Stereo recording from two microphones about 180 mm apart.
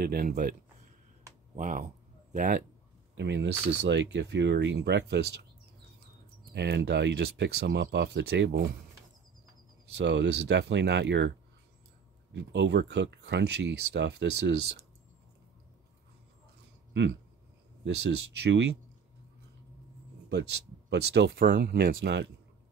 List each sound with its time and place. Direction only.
0.0 s a man's voice: 55° right (ahead or behind)
3.2 s speech: 80° right
6.5 s speech: 70° right (ahead or behind)
9.9 s speech: 75° right (ahead or behind)
12.4 s speech: 75° right (ahead or behind)
18.4 s speech: 75° right (ahead or behind)
20.9 s speech: 70° right (ahead or behind)